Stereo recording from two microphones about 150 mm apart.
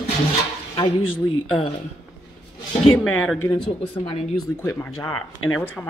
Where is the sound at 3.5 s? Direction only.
35° left (ahead or behind).